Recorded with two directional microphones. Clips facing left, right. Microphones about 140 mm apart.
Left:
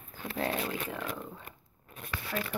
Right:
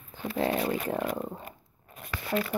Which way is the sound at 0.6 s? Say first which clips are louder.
Right 7 dB; 45° right (ahead or behind).